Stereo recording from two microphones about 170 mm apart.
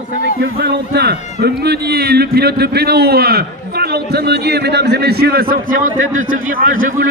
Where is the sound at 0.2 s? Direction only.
80° right.